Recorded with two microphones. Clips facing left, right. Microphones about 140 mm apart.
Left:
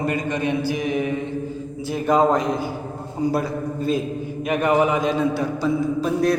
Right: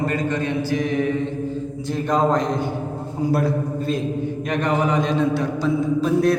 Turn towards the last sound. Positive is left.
turn(degrees=0)  # may be behind; listen again after turning